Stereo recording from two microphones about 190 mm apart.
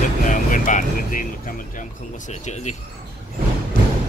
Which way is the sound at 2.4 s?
35° left (ahead or behind).